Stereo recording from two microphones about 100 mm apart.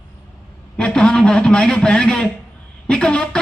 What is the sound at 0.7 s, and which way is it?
A man's voice, 10° left (ahead or behind).